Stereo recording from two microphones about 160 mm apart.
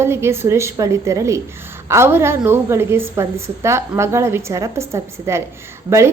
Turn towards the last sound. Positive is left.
turn(degrees=-20)  # may be behind; listen again after turning